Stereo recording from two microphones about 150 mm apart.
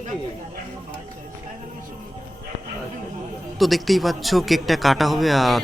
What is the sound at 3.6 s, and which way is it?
Speech, centre (ahead or behind).